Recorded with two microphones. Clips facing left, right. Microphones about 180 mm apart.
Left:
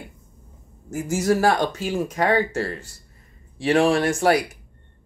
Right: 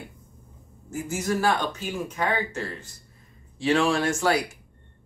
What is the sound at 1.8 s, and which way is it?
Speech, 90° left.